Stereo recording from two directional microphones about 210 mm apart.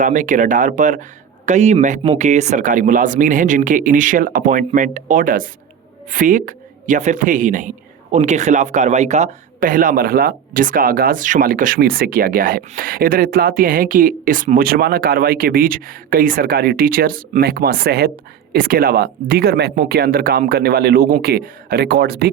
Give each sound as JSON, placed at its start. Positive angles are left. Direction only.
{"t": 0.0, "sound": "speech", "side_deg": -35}